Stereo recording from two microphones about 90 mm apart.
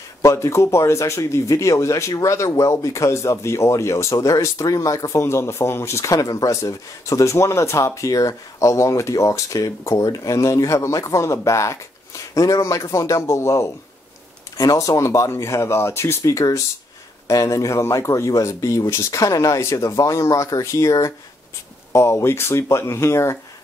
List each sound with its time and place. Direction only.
0.2 s speech: 35° left (ahead or behind)